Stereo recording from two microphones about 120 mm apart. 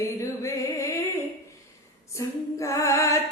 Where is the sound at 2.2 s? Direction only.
25° left (ahead or behind).